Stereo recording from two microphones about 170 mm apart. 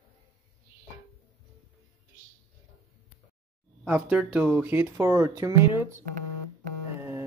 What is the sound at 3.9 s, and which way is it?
Speech, 10° right (ahead or behind).